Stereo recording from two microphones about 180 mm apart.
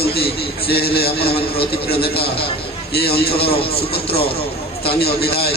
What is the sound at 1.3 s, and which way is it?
Speech, 30° left (ahead or behind).